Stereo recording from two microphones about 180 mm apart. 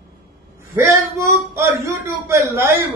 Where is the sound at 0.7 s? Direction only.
15° right (ahead or behind).